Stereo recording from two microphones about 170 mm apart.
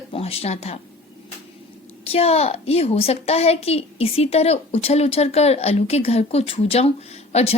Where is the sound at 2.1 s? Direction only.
35° left (ahead or behind).